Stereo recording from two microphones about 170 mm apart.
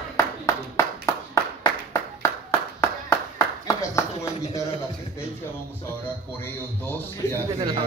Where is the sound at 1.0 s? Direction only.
20° left (ahead or behind).